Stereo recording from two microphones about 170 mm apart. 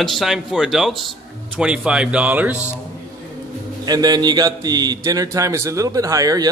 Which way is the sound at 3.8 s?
25° right (ahead or behind).